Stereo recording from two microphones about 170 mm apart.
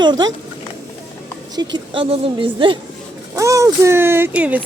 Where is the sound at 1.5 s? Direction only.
30° right (ahead or behind).